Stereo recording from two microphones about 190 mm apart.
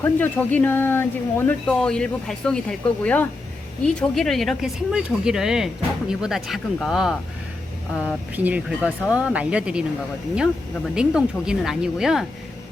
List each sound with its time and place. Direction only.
0.0 s speech: 10° left (ahead or behind)